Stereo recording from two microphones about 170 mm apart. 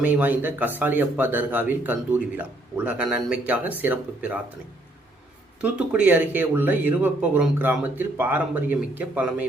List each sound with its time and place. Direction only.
0.0 s speech: 10° right (ahead or behind)
5.7 s speech: 10° right (ahead or behind)